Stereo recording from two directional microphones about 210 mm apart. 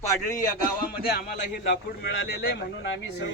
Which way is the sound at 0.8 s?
50° left (ahead or behind).